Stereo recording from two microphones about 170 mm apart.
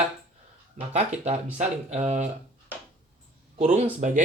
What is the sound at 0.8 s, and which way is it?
Speech, 45° right (ahead or behind).